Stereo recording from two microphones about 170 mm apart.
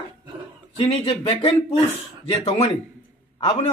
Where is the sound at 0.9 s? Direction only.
35° left (ahead or behind).